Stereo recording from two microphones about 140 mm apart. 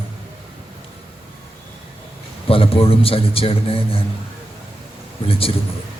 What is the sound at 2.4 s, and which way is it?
A man's voice, 40° left (ahead or behind).